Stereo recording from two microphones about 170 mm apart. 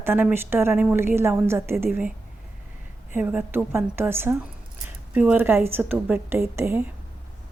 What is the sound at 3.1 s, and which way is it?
A woman's voice, 10° right (ahead or behind).